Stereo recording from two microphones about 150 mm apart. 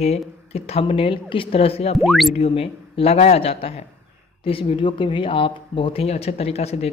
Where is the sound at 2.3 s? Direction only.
40° left (ahead or behind).